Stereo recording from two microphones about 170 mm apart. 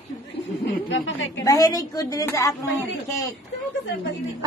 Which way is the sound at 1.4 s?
20° left (ahead or behind).